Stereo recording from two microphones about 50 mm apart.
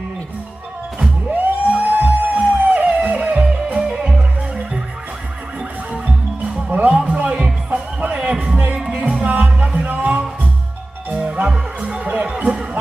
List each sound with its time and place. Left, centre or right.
0.9 s music: centre
1.3 s music: right
3.3 s music: centre
6.0 s music: right
12.4 s a sound: right